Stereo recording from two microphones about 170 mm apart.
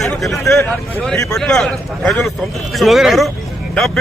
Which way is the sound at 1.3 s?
5° left (ahead or behind).